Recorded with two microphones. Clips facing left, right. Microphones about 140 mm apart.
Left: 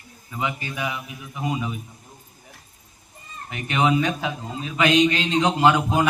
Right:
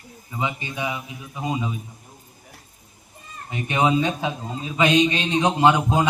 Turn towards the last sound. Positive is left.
turn(degrees=-20)  # may be behind; listen again after turning